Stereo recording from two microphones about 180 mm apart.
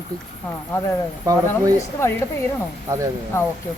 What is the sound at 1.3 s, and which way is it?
Speech, 20° right (ahead or behind).